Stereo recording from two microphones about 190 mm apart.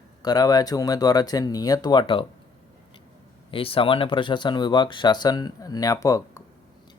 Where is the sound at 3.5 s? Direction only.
30° left (ahead or behind).